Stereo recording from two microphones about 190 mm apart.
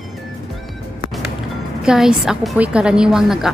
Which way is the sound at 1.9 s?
5° right (ahead or behind).